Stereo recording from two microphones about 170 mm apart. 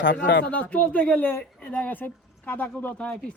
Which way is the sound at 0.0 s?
90° left.